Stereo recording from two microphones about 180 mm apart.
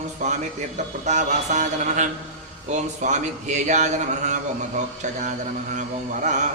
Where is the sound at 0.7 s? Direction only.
40° right (ahead or behind).